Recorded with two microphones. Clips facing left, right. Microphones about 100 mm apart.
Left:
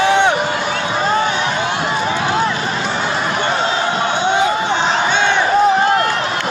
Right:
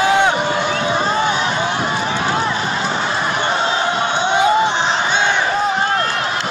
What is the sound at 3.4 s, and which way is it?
Crowd, 25° right (ahead or behind).